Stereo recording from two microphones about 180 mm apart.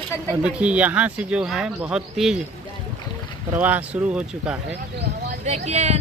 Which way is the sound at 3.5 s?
10° right (ahead or behind).